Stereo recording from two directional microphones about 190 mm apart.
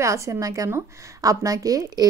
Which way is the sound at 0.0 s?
15° right (ahead or behind).